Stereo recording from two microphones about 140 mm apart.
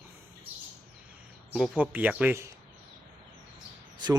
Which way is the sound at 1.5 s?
5° right (ahead or behind).